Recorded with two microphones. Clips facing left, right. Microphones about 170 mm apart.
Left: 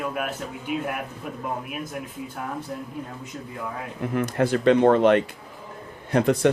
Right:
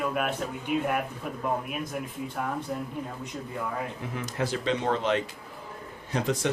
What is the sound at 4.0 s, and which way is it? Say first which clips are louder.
Speech: left 14 dB; 60° left (ahead or behind).